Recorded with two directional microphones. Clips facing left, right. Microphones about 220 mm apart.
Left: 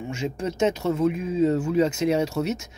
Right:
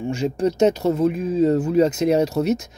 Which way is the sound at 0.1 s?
35° right (ahead or behind).